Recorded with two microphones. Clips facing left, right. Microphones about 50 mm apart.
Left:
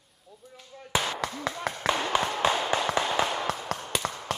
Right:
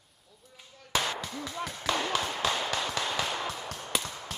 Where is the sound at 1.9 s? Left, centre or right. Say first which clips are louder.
Left 2 dB; centre.